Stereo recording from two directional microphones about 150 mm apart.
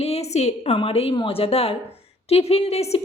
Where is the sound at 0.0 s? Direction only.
45° left (ahead or behind).